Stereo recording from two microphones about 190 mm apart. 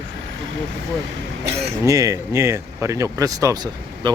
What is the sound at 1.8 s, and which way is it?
Speech, 15° right (ahead or behind).